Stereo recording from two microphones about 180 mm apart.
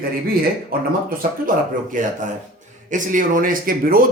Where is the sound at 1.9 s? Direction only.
45° right (ahead or behind).